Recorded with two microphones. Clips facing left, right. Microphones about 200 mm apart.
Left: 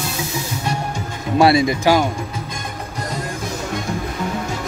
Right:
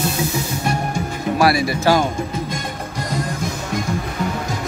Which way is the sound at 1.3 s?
25° left (ahead or behind).